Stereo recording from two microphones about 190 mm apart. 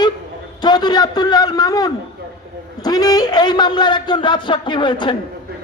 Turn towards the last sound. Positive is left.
turn(degrees=25)  # may be behind; listen again after turning